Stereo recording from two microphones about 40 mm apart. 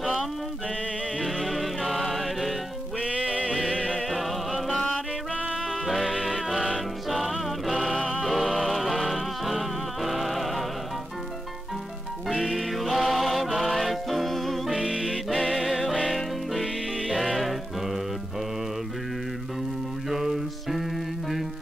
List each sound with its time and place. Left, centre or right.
0.0 s music: centre
3.3 s music: right
3.9 s music: centre
5.3 s music: right
5.7 s music: centre
7.8 s music: centre
8.1 s music: centre
12.3 s music: centre
14.8 s music: centre
20.1 s music: centre